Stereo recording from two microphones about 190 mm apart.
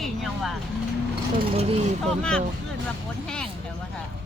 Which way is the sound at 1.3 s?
30° right (ahead or behind).